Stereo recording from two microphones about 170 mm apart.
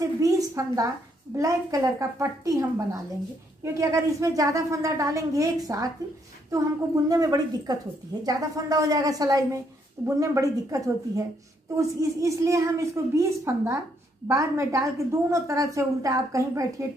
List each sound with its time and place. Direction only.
0.0 s a woman's voice: 20° right (ahead or behind)
7.1 s a woman's voice: 20° right (ahead or behind)